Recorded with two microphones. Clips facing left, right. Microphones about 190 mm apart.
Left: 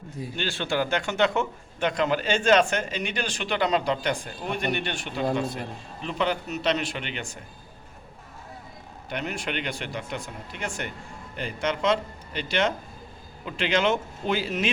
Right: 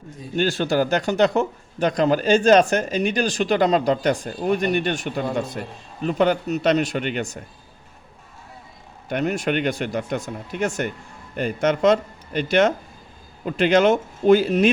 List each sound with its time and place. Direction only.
0.3 s speech: 40° right (ahead or behind)
9.0 s speech: 45° right (ahead or behind)